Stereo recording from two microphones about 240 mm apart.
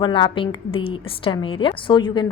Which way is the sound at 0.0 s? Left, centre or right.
Centre.